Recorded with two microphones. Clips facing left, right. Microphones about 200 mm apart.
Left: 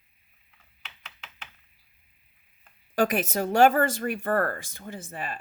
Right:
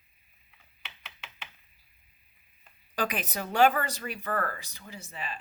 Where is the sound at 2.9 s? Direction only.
45° left (ahead or behind).